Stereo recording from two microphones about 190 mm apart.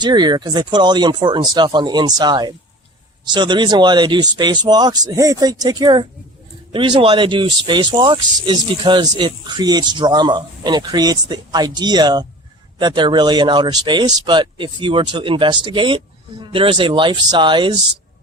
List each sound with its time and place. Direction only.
0.0 s speech: 20° right (ahead or behind)